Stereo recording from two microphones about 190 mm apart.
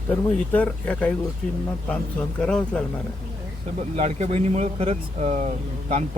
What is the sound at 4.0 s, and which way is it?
Speech, 35° right (ahead or behind).